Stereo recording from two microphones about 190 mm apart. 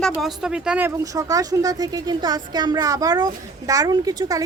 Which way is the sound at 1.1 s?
20° right (ahead or behind).